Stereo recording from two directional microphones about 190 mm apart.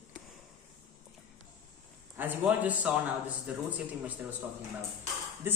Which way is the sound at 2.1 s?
10° right (ahead or behind).